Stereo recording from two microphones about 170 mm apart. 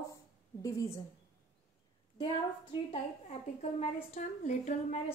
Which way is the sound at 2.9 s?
35° left (ahead or behind).